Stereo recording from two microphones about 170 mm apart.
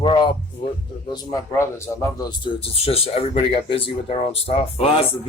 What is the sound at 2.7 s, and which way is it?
Speech, 35° left (ahead or behind).